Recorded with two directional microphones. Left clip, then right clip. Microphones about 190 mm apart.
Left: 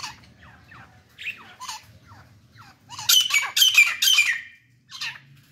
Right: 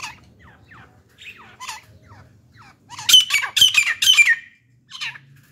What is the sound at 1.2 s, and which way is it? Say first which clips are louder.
Rodents: left 7 dB; 65° right (ahead or behind).